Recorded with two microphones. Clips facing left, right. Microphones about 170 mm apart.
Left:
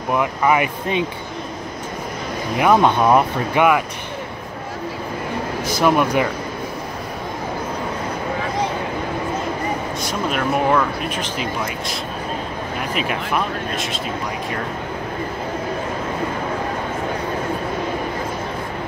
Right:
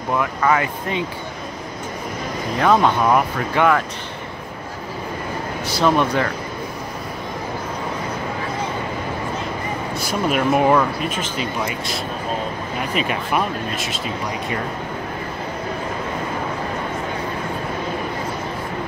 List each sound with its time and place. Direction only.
0.1 s speech: 15° left (ahead or behind)
2.6 s speech: 15° left (ahead or behind)
5.8 s speech: 10° left (ahead or behind)
9.9 s speech: 5° right (ahead or behind)
12.9 s speech: centre (ahead or behind)